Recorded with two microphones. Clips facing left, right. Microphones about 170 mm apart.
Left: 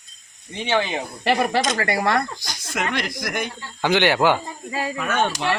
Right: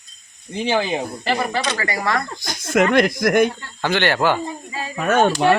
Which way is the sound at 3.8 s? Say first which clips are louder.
Left 1 dB; 15° left (ahead or behind).